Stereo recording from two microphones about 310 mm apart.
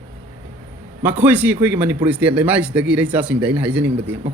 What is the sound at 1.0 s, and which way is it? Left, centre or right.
Speech, centre.